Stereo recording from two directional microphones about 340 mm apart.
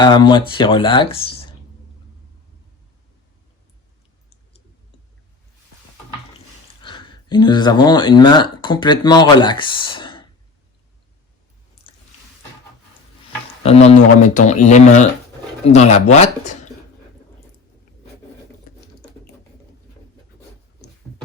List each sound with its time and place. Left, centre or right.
0.0 s speech: centre
6.8 s speech: centre
13.6 s speech: centre